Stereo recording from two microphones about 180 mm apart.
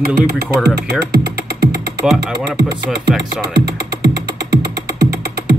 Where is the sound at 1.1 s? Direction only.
65° right (ahead or behind).